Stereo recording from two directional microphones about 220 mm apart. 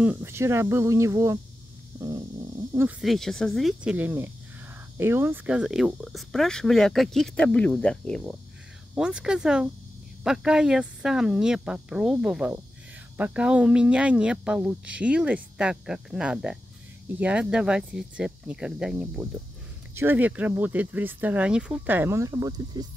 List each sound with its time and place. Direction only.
0.0 s speech: 10° right (ahead or behind)
2.0 s a sound: 15° right (ahead or behind)
3.0 s speech: centre (ahead or behind); by 22.8 s 15° right (ahead or behind)